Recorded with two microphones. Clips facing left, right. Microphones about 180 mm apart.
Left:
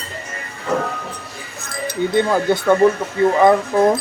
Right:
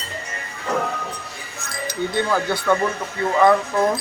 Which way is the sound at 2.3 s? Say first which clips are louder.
Left 5 dB; 20° left (ahead or behind).